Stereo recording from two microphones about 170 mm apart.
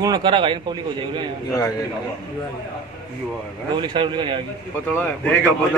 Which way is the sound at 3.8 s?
30° right (ahead or behind).